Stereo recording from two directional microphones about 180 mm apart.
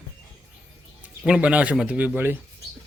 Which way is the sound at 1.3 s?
5° right (ahead or behind).